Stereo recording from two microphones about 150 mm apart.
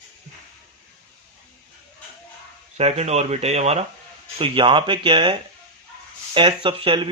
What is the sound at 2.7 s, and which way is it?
Speech, 45° right (ahead or behind).